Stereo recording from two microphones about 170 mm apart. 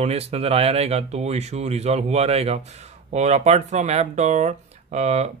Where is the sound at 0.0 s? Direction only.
35° right (ahead or behind).